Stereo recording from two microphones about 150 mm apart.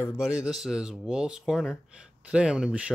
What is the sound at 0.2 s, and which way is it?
Speech, 5° right (ahead or behind).